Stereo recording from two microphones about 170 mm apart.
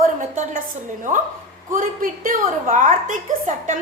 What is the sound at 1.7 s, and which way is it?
A woman's voice, 50° right (ahead or behind).